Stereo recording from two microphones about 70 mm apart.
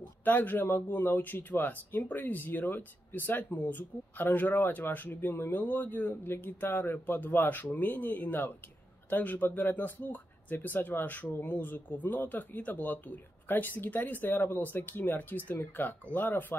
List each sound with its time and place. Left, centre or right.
0.2 s speech: left